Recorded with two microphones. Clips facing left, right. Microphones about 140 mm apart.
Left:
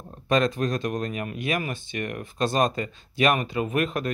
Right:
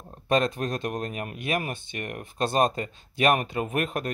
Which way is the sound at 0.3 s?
45° right (ahead or behind).